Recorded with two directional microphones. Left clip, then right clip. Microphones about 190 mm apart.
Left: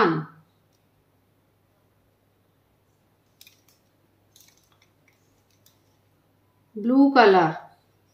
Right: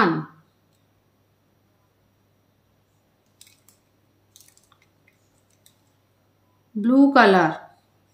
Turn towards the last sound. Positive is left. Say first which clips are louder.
# right 1 dB
turn(degrees=-30)  # may be behind; listen again after turning